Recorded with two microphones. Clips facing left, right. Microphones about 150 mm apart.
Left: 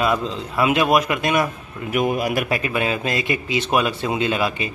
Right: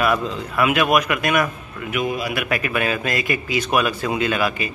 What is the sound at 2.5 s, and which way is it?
Speech, 25° left (ahead or behind).